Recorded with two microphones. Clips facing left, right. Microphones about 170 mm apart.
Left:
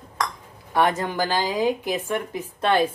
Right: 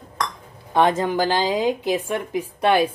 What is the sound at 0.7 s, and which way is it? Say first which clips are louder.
A woman's voice: right 3 dB; 20° right (ahead or behind).